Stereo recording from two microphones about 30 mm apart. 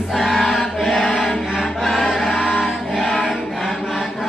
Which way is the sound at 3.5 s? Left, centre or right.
Centre.